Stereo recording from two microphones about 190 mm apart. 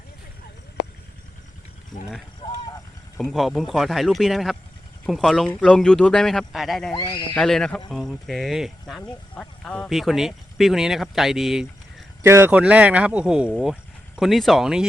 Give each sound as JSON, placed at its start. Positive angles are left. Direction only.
{"t": 3.2, "sound": "speech", "side_deg": 0}
{"t": 6.9, "sound": "speech", "side_deg": 25}
{"t": 7.3, "sound": "speech", "side_deg": 5}
{"t": 12.2, "sound": "speech", "side_deg": -15}